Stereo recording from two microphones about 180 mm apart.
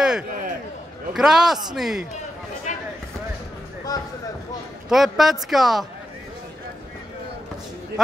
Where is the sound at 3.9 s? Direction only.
20° left (ahead or behind).